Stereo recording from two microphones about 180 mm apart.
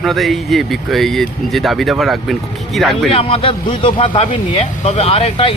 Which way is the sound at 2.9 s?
30° left (ahead or behind).